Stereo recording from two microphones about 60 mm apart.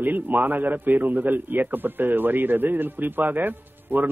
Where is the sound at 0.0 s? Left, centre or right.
Right.